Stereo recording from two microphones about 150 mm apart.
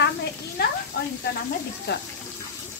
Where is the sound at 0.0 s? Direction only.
90° left.